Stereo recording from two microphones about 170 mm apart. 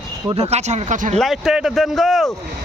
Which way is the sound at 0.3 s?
40° right (ahead or behind).